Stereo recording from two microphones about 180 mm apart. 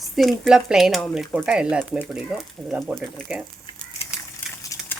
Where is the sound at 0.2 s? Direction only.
Centre (ahead or behind).